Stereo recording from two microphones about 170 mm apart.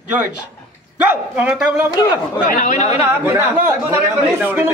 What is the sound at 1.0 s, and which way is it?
Speech, 10° right (ahead or behind).